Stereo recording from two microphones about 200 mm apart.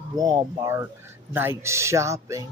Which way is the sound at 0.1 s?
20° right (ahead or behind).